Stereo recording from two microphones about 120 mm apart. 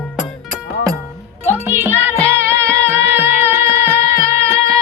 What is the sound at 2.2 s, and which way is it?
Music, 20° right (ahead or behind).